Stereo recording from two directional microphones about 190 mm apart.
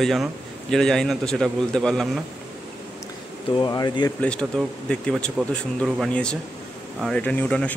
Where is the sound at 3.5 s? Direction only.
20° left (ahead or behind).